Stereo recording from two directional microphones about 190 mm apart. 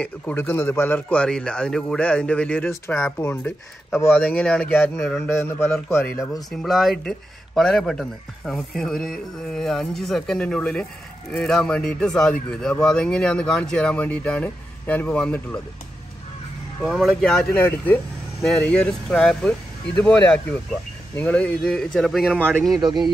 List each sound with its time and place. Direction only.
0.0 s speech: 10° left (ahead or behind)
6.5 s speech: centre (ahead or behind)
16.8 s speech: centre (ahead or behind)
22.8 s speech: 20° right (ahead or behind)